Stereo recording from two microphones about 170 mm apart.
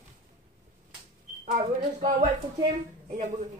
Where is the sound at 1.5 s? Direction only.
45° right (ahead or behind).